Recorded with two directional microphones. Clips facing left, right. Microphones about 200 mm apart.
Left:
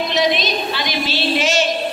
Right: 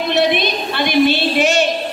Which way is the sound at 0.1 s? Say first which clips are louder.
Right 4 dB; 60° right (ahead or behind).